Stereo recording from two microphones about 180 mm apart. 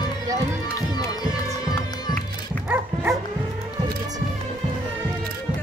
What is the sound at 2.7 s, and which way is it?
Dog, 10° right (ahead or behind).